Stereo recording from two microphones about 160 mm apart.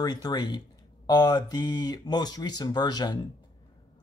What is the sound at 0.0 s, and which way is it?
Speech, 25° left (ahead or behind).